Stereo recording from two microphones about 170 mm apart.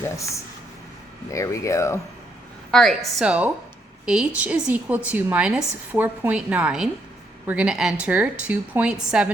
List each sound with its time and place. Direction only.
1.3 s speech: 20° left (ahead or behind)
2.7 s a woman's voice: centre (ahead or behind)